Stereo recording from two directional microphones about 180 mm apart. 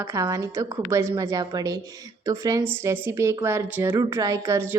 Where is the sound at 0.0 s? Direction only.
15° right (ahead or behind).